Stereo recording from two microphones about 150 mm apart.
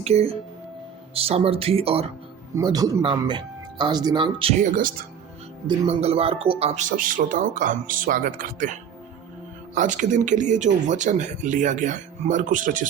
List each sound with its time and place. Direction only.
0.0 s speech: 45° right (ahead or behind)
2.6 s speech: 25° right (ahead or behind)
4.6 s speech: 65° right (ahead or behind)
5.6 s speech: 40° right (ahead or behind)
6.9 s speech: 65° right (ahead or behind)
9.7 s speech: 55° right (ahead or behind)